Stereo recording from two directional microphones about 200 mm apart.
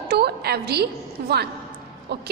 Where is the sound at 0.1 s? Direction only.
55° right (ahead or behind).